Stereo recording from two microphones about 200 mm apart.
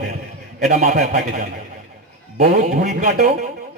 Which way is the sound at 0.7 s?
40° right (ahead or behind).